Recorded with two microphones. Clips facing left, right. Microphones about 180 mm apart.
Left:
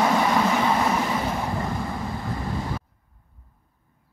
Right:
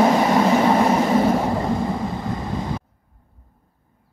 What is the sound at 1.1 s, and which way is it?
Vehicle, 45° right (ahead or behind).